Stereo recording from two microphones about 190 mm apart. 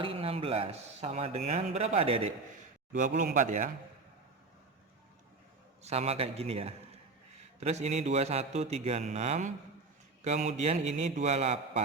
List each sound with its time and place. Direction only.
0.0 s a man's voice: 30° right (ahead or behind)
2.9 s speech: 40° right (ahead or behind)
5.8 s a man's voice: 35° right (ahead or behind)